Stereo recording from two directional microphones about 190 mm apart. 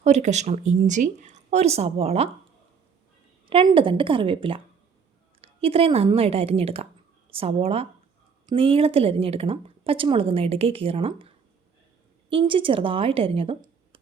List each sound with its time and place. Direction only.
0.0 s speech: 35° right (ahead or behind)
3.4 s a woman's voice: 25° right (ahead or behind)
12.3 s speech: 25° right (ahead or behind)